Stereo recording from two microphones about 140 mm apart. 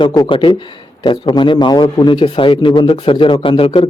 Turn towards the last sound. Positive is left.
turn(degrees=40)  # may be behind; listen again after turning